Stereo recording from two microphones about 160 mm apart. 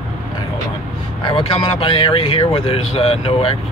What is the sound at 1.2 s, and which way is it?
Speech, 35° left (ahead or behind).